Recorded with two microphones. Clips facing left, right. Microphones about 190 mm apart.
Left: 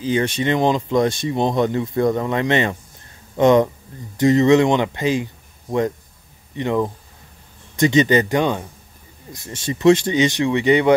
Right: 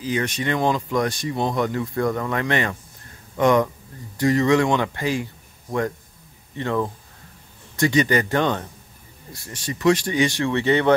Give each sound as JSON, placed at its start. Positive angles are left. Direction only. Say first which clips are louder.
{"t": 0.0, "sound": "speech", "louder": "left 5 dB", "side_deg": 25}
{"t": 9.3, "sound": "speech", "louder": "left 5 dB", "side_deg": 25}